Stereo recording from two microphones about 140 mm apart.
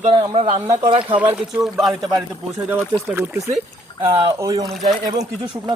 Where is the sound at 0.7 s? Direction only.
30° right (ahead or behind).